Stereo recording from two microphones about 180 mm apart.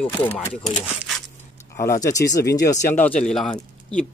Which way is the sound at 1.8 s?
20° left (ahead or behind).